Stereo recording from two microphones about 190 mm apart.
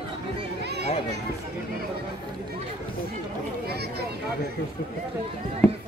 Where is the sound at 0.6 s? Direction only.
60° right (ahead or behind).